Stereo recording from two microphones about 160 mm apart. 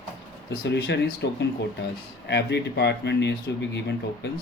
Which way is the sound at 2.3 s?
90° left.